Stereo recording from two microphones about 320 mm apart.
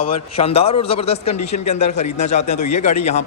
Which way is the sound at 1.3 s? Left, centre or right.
Left.